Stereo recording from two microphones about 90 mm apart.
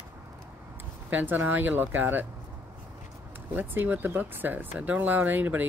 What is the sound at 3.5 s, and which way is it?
Speech, 20° right (ahead or behind).